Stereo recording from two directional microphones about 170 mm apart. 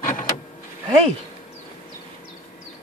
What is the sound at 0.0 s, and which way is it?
Vehicle, 50° left (ahead or behind).